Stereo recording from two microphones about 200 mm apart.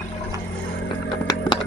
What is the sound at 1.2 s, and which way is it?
Music, 20° left (ahead or behind).